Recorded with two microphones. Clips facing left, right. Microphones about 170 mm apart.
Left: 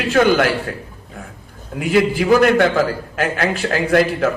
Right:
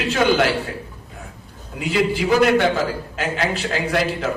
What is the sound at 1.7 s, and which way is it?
A man's voice, 50° left (ahead or behind).